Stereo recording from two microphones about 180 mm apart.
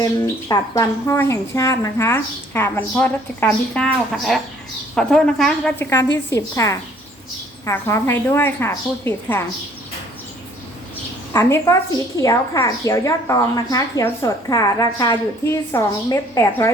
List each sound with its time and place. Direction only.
0.0 s a woman's voice: 20° left (ahead or behind)
11.3 s a woman's voice: 15° left (ahead or behind)